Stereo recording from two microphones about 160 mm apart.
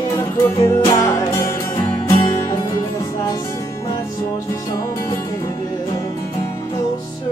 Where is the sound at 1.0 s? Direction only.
20° left (ahead or behind).